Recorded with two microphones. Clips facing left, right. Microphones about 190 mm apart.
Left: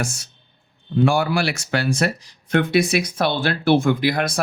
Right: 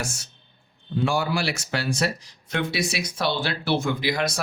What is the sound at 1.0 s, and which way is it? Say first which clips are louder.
Speech: left 5 dB; 55° left (ahead or behind).